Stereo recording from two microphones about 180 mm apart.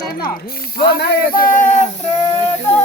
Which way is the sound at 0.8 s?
65° left (ahead or behind).